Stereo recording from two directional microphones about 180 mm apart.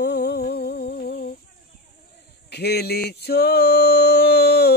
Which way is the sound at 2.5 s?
65° left (ahead or behind).